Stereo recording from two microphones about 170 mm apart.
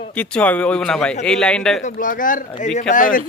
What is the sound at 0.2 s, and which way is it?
Speech, 10° left (ahead or behind).